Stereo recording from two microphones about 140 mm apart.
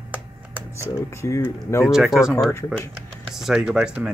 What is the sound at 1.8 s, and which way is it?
Speech, centre (ahead or behind).